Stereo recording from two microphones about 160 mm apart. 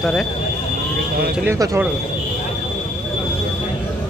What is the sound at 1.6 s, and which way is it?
Speech, 20° right (ahead or behind).